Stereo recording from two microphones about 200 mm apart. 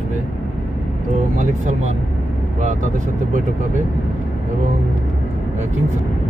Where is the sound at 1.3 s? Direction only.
40° right (ahead or behind).